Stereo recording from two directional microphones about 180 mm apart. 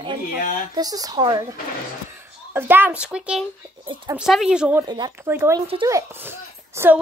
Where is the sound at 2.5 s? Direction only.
10° right (ahead or behind).